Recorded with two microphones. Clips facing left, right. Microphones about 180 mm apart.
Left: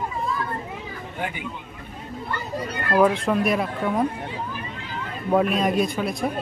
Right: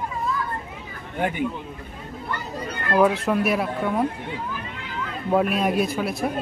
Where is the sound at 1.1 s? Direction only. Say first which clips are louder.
Right 6 dB; 50° right (ahead or behind).